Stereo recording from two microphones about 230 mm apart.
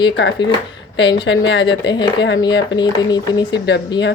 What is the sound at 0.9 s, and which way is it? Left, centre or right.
Speech, left.